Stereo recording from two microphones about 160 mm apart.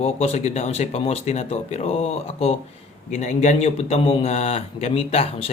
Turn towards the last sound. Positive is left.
turn(degrees=40)  # may be behind; listen again after turning